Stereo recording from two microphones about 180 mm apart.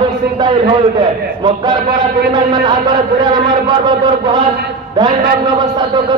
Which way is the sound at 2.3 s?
25° right (ahead or behind).